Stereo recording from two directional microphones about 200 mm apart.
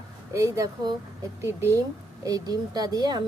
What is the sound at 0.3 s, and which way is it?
Speech, 15° right (ahead or behind).